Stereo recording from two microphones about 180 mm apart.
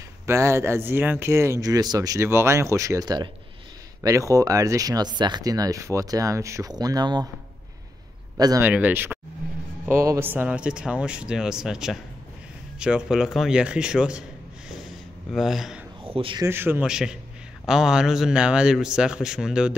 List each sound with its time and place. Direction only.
0.3 s speech: 15° right (ahead or behind)
8.4 s speech: 20° right (ahead or behind)
8.6 s speech: 10° right (ahead or behind)
15.3 s speech: centre (ahead or behind)
16.0 s speech: 30° right (ahead or behind)
16.4 s speech: 10° right (ahead or behind)